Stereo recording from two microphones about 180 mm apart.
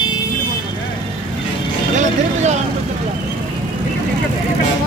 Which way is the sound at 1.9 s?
40° right (ahead or behind).